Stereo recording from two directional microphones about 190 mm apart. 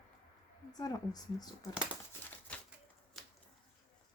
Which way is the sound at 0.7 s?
20° left (ahead or behind).